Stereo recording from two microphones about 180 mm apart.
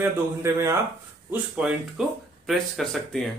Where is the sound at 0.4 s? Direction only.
15° right (ahead or behind).